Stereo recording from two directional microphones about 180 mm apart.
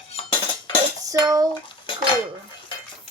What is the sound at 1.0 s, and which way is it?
Dishes, 20° right (ahead or behind).